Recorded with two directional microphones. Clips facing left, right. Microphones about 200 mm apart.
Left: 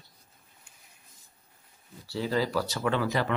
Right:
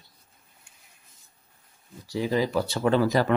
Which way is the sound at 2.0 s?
15° right (ahead or behind).